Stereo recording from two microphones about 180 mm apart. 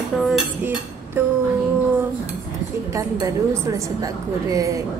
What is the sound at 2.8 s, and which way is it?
A woman's voice, 15° right (ahead or behind).